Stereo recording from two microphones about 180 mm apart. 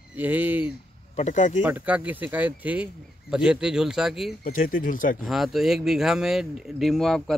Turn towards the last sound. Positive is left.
turn(degrees=0)  # may be behind; listen again after turning